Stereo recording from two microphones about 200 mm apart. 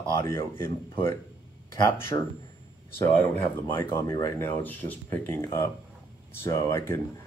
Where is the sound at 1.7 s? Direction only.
15° left (ahead or behind).